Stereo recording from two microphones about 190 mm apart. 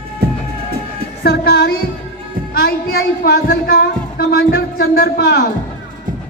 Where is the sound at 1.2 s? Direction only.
55° left (ahead or behind).